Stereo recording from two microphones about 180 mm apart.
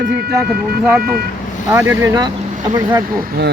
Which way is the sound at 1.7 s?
10° right (ahead or behind).